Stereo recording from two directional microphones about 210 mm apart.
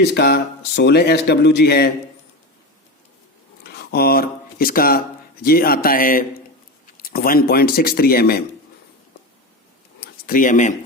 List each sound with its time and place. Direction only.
0.0 s a man's voice: 55° left (ahead or behind)
3.6 s a man's voice: 50° left (ahead or behind)
10.0 s a sound: 40° left (ahead or behind)